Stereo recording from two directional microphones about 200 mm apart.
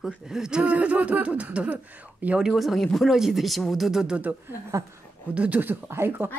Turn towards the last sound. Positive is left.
turn(degrees=-10)  # may be behind; listen again after turning